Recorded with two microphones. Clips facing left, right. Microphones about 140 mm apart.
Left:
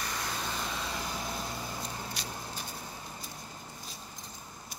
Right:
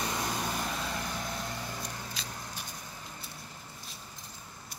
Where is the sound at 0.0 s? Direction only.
20° right (ahead or behind); by 2.0 s 10° left (ahead or behind).